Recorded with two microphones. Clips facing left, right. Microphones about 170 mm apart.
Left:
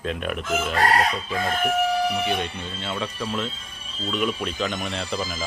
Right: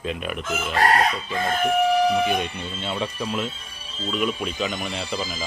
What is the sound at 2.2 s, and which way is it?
Speech, 15° right (ahead or behind).